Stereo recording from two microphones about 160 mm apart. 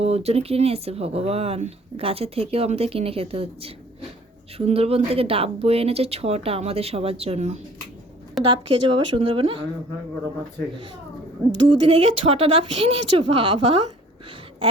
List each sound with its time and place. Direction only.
0.0 s speech: 40° right (ahead or behind)
8.4 s speech: 30° right (ahead or behind)
11.5 s speech: 30° right (ahead or behind)